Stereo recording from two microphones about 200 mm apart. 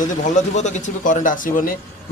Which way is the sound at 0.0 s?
40° left (ahead or behind).